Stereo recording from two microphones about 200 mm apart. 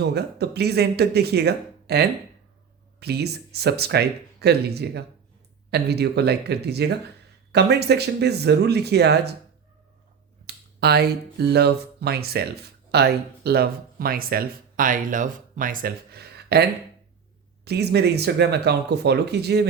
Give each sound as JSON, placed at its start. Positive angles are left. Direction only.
{"t": 0.0, "sound": "speech", "side_deg": -55}
{"t": 10.4, "sound": "speech", "side_deg": -55}
{"t": 17.7, "sound": "speech", "side_deg": -55}